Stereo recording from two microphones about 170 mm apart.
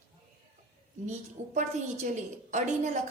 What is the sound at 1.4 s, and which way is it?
A woman's voice, 40° right (ahead or behind).